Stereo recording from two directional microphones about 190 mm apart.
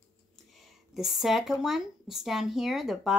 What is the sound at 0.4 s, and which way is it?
Speech, centre (ahead or behind).